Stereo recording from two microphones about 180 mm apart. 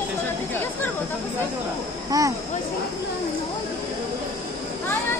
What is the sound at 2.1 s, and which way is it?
Speech, 20° right (ahead or behind).